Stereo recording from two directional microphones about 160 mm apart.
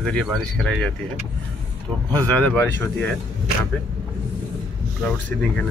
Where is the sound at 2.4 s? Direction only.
10° left (ahead or behind).